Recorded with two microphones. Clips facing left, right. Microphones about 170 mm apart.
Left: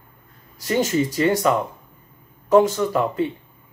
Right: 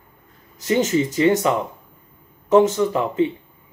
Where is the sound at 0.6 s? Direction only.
20° right (ahead or behind).